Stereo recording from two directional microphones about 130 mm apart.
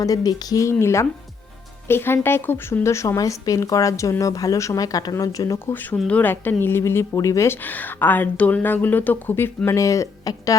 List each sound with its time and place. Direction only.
0.0 s speech: 25° left (ahead or behind)